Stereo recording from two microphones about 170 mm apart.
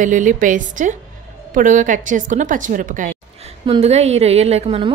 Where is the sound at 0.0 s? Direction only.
50° right (ahead or behind).